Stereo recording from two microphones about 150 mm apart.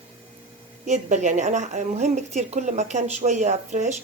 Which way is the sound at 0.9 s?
55° right (ahead or behind).